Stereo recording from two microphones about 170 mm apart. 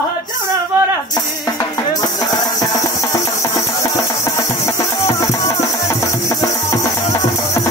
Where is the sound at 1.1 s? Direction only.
20° left (ahead or behind).